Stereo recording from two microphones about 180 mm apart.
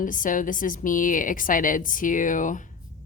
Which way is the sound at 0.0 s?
45° left (ahead or behind).